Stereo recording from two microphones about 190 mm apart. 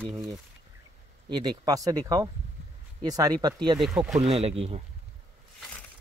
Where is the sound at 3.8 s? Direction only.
Centre (ahead or behind).